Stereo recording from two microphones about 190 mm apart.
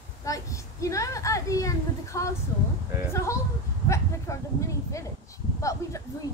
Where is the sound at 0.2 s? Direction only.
15° left (ahead or behind).